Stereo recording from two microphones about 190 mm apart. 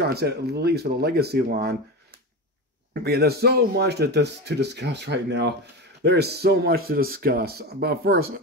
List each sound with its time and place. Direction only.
0.0 s speech: 60° right (ahead or behind)
2.9 s speech: 55° right (ahead or behind)